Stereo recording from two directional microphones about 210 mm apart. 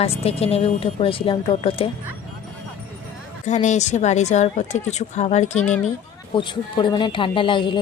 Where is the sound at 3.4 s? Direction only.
35° left (ahead or behind).